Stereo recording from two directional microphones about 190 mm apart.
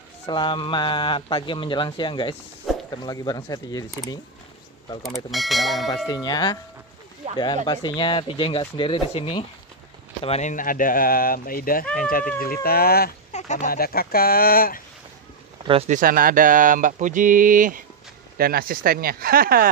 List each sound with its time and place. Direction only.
0.3 s speech: 25° left (ahead or behind)
5.0 s speech: centre (ahead or behind)
6.0 s speech: 20° left (ahead or behind); by 11.8 s 50° left (ahead or behind)
11.8 s speech: 5° left (ahead or behind)
12.6 s speech: 55° left (ahead or behind)
13.3 s speech: 40° left (ahead or behind)
15.6 s speech: 30° right (ahead or behind)
15.9 s speech: 45° right (ahead or behind)